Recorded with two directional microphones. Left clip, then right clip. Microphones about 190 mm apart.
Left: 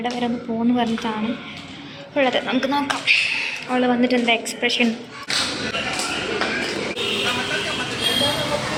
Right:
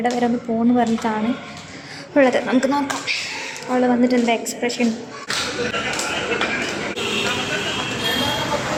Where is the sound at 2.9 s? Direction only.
10° right (ahead or behind).